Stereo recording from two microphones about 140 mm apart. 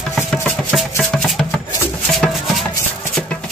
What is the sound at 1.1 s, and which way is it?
Music, centre (ahead or behind).